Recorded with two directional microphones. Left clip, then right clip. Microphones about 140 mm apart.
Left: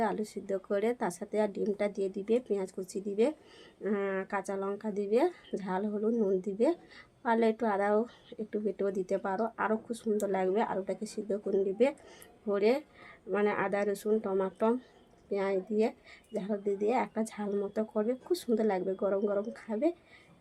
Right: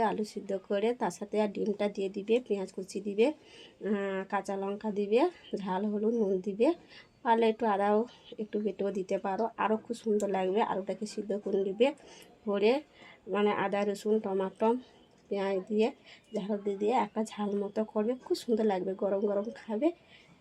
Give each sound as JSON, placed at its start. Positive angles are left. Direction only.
{"t": 0.0, "sound": "speech", "side_deg": -20}